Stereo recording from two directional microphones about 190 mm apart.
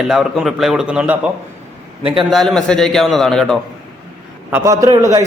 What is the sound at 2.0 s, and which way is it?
Speech, 30° right (ahead or behind).